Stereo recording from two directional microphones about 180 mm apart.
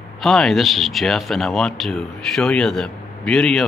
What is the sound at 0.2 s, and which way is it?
Speech, centre (ahead or behind).